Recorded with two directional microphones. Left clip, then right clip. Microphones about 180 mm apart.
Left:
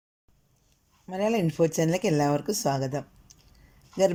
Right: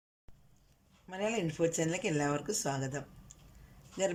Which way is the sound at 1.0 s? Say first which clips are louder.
Left 8 dB; 25° left (ahead or behind).